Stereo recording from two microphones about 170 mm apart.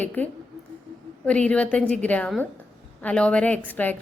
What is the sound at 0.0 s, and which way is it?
Speech, 10° left (ahead or behind).